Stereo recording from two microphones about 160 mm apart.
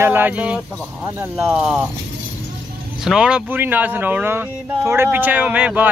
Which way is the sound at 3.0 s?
5° right (ahead or behind).